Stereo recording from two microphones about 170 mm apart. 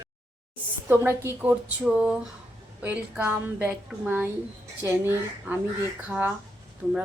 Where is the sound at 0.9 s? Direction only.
15° right (ahead or behind).